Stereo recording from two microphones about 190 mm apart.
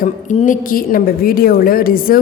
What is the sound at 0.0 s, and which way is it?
A woman's voice, 40° left (ahead or behind).